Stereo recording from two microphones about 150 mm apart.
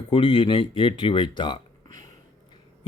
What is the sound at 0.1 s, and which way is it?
Speech, 35° left (ahead or behind).